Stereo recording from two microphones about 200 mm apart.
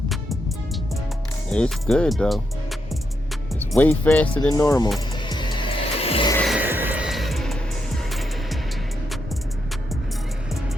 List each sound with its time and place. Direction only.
0.1 s music: centre (ahead or behind)
1.5 s speech: 5° left (ahead or behind)
4.4 s speech: 20° left (ahead or behind)
4.9 s music: 20° left (ahead or behind)
6.3 s music: centre (ahead or behind)
6.6 s music: 10° right (ahead or behind)